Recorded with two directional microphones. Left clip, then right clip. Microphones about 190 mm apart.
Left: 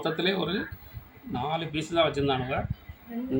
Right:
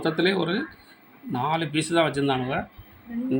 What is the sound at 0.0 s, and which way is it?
Speech, 25° right (ahead or behind).